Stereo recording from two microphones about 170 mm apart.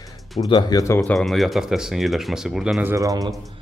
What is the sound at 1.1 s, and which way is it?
Speech, centre (ahead or behind).